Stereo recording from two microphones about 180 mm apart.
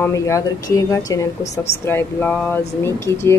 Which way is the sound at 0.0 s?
15° left (ahead or behind).